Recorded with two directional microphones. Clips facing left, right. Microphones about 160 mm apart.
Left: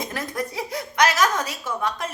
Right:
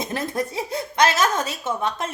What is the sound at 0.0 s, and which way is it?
Speech, 25° right (ahead or behind).